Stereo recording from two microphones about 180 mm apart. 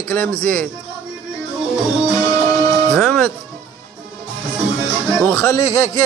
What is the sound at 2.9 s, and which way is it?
Music, 5° left (ahead or behind).